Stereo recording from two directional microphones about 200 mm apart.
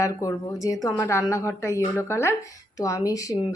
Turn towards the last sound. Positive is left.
turn(degrees=15)  # may be behind; listen again after turning